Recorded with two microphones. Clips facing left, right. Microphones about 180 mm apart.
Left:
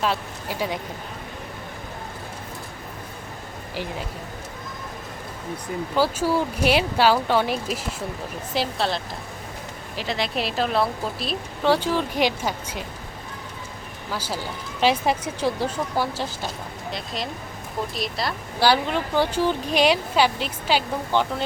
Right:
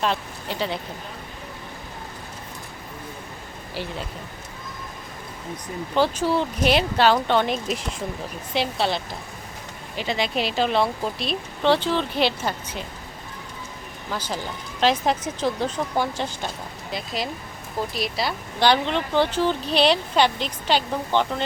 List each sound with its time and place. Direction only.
0.0 s speech: 10° left (ahead or behind)
6.0 s speech: 10° left (ahead or behind)
14.1 s speech: 10° left (ahead or behind)
17.9 s speech: centre (ahead or behind)